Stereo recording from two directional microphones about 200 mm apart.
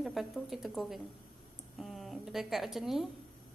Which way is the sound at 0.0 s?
Centre (ahead or behind).